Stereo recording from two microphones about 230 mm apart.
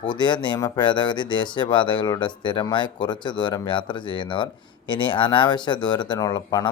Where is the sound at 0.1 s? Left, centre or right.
Centre.